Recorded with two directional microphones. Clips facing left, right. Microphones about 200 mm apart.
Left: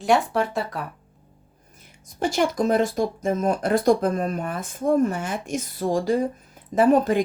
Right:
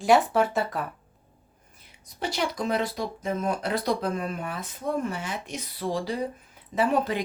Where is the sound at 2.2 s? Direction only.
45° left (ahead or behind).